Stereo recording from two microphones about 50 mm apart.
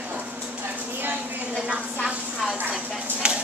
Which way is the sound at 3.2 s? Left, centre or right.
Right.